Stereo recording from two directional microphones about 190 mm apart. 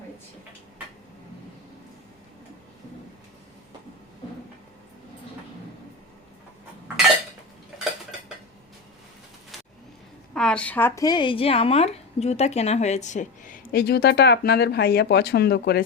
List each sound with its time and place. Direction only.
10.3 s a woman's voice: 5° left (ahead or behind); by 15.8 s 60° left (ahead or behind)